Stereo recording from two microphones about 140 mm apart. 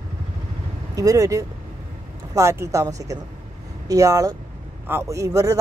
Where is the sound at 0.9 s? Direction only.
25° right (ahead or behind).